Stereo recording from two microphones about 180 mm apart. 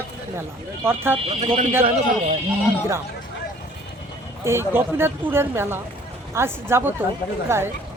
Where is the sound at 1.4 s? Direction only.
40° right (ahead or behind).